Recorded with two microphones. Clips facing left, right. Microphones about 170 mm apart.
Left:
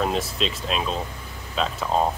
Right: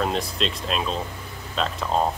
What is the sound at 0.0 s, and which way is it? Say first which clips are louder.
Speech: left 1 dB; centre (ahead or behind).